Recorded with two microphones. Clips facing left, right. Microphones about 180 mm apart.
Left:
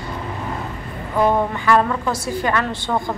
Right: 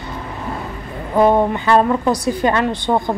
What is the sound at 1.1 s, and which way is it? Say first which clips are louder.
A woman's voice: right 4 dB; 20° right (ahead or behind).